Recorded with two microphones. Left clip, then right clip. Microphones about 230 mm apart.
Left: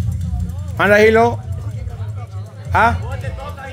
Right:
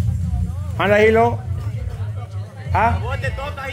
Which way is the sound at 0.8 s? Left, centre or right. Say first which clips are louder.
Left 3 dB; left.